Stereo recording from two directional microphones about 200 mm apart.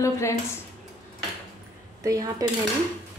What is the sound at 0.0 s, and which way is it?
Speech, 15° left (ahead or behind).